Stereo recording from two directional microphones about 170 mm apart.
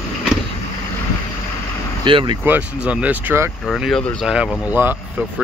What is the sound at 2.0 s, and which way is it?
Speech, 30° right (ahead or behind).